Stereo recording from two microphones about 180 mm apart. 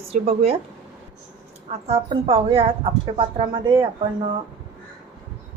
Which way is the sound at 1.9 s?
30° right (ahead or behind).